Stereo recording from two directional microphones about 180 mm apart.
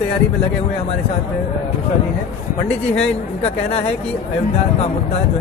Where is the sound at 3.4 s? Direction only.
35° left (ahead or behind).